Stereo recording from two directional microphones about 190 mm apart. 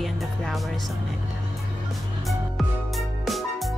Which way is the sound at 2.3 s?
Centre (ahead or behind).